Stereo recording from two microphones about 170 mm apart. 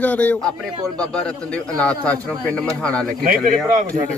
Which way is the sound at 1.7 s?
5° left (ahead or behind).